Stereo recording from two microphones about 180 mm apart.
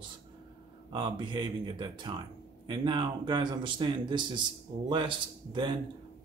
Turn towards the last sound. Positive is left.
turn(degrees=-25)  # may be behind; listen again after turning